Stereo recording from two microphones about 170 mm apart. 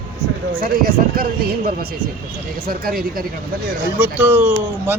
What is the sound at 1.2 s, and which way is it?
Speech, 60° right (ahead or behind).